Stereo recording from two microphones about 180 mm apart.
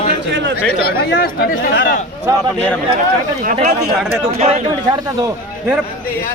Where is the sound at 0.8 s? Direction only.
60° left (ahead or behind).